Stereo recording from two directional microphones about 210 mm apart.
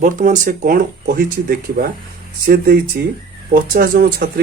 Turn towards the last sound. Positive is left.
turn(degrees=-45)  # may be behind; listen again after turning